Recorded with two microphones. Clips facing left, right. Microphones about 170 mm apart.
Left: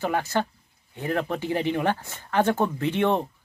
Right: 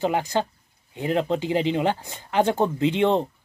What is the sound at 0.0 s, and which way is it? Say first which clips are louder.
Speech: right 2 dB; 15° right (ahead or behind).